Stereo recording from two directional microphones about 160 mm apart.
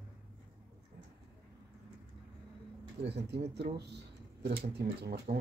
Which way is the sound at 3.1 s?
90° right.